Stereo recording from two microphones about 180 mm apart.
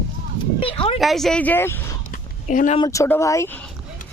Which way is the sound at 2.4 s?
40° left (ahead or behind).